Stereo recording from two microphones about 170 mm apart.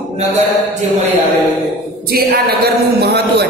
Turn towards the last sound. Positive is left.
turn(degrees=-70)  # may be behind; listen again after turning